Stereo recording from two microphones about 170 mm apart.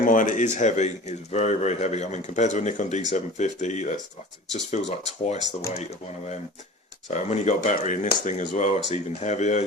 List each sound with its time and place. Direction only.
0.0 s speech: 50° left (ahead or behind)
7.1 s speech: 45° left (ahead or behind)